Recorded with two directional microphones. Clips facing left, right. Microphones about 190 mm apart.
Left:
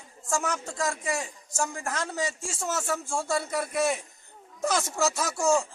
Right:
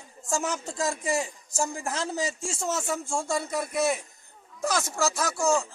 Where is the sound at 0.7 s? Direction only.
25° right (ahead or behind).